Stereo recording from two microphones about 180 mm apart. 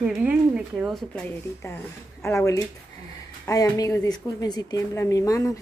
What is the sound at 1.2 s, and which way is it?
A woman's voice, 15° left (ahead or behind).